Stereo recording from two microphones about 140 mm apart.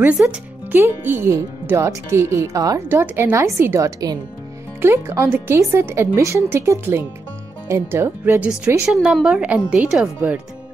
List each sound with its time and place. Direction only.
0.2 s speech: 15° right (ahead or behind)
8.8 s a woman's voice: centre (ahead or behind)